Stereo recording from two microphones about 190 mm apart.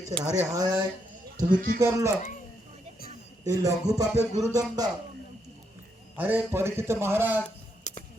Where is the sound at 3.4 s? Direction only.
20° right (ahead or behind).